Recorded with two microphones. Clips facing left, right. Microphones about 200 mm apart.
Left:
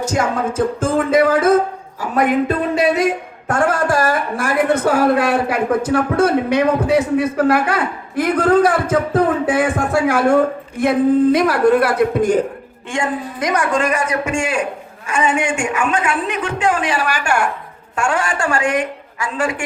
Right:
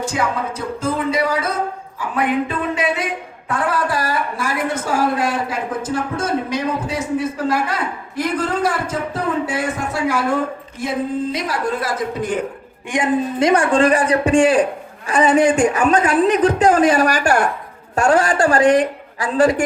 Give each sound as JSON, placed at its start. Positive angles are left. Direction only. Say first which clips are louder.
{"t": 0.0, "sound": "music", "louder": "left 3 dB", "side_deg": 45}
{"t": 2.0, "sound": "a man's voice", "louder": "left 3 dB", "side_deg": 40}
{"t": 12.9, "sound": "a man's voice", "louder": "right 4 dB", "side_deg": -25}